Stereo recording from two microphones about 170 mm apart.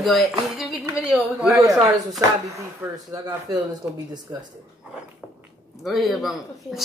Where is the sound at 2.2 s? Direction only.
20° right (ahead or behind).